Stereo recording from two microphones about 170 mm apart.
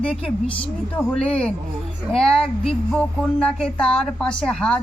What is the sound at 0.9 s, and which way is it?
Speech, 5° left (ahead or behind).